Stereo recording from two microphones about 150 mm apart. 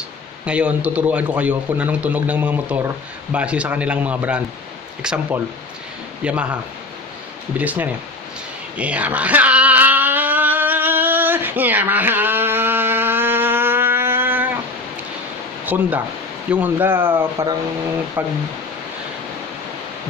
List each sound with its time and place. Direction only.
0.5 s a man's voice: 10° right (ahead or behind)
8.7 s a sound: 10° right (ahead or behind)
15.6 s a man's voice: 10° right (ahead or behind)